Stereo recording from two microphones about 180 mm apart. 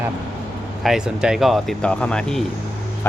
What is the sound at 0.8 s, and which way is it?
Speech, 5° right (ahead or behind).